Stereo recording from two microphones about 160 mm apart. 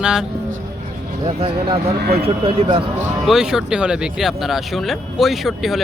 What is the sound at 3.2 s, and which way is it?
Speech, 5° right (ahead or behind).